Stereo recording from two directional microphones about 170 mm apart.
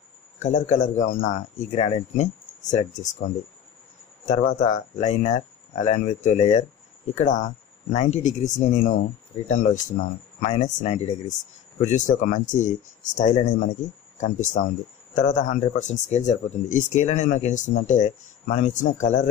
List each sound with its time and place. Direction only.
0.4 s speech: 45° left (ahead or behind)
4.3 s speech: 50° left (ahead or behind)